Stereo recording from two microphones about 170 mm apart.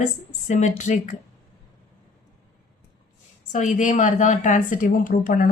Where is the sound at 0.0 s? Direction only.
45° left (ahead or behind).